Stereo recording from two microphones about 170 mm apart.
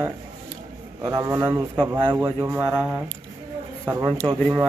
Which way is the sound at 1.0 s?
25° right (ahead or behind).